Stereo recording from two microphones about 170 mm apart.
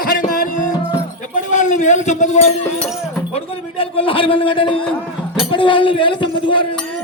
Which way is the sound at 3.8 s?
30° left (ahead or behind).